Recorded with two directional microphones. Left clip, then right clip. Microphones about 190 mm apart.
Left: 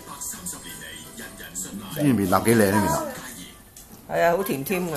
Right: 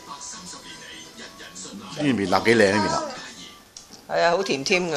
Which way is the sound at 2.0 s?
10° right (ahead or behind).